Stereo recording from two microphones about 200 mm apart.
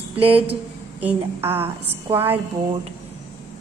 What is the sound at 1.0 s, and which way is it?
A woman's voice, 10° right (ahead or behind).